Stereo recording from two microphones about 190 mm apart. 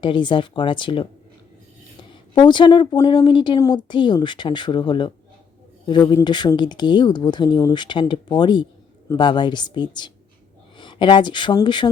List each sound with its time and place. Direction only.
0.0 s speech: 25° left (ahead or behind)
2.3 s speech: 25° left (ahead or behind)